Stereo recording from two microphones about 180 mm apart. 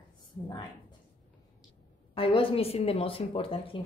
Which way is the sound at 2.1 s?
30° left (ahead or behind).